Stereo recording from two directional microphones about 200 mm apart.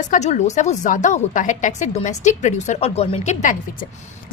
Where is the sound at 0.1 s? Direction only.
35° left (ahead or behind).